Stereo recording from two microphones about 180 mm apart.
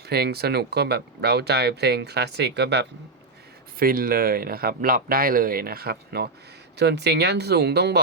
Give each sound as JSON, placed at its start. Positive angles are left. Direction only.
{"t": 0.0, "sound": "speech", "side_deg": -60}
{"t": 3.8, "sound": "speech", "side_deg": -55}